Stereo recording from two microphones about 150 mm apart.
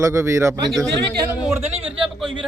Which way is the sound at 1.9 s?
5° right (ahead or behind).